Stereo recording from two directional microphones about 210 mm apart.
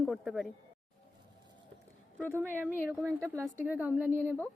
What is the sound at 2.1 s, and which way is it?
A woman's voice, 10° right (ahead or behind).